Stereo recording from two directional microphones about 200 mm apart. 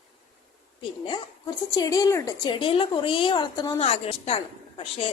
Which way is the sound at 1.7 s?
20° left (ahead or behind).